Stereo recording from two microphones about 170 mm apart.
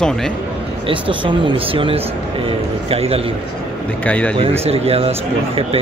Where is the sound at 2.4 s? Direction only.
35° right (ahead or behind).